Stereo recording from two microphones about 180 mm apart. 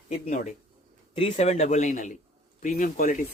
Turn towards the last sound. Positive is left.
turn(degrees=45)  # may be behind; listen again after turning